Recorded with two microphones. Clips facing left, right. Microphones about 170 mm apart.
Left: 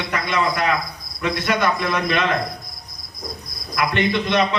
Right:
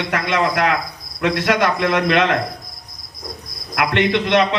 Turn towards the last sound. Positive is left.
turn(degrees=-85)